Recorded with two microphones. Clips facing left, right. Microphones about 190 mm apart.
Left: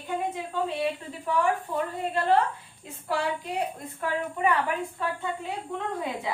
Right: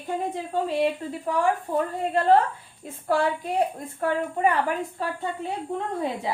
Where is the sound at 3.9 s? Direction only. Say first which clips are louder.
Right 4 dB; 40° right (ahead or behind).